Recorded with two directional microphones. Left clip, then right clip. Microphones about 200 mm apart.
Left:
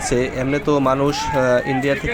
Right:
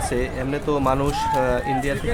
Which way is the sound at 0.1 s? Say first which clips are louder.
Left 5 dB; 20° left (ahead or behind).